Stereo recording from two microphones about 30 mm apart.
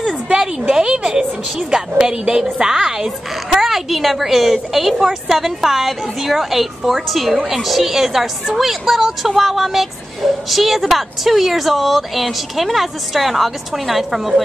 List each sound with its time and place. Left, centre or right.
0.3 s a sound: centre
2.0 s a woman's voice: right
3.6 s a woman's voice: centre